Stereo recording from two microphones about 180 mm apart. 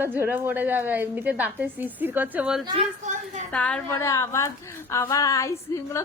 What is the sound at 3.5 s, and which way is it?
A woman's voice, 5° left (ahead or behind).